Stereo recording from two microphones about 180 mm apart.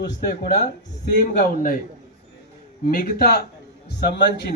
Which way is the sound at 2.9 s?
55° left (ahead or behind).